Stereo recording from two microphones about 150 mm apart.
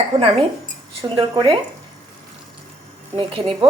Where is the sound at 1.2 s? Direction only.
35° right (ahead or behind).